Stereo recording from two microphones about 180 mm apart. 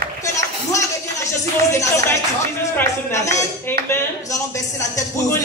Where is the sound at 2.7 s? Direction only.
15° left (ahead or behind).